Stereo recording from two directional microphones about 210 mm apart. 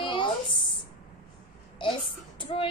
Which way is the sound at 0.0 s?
25° left (ahead or behind).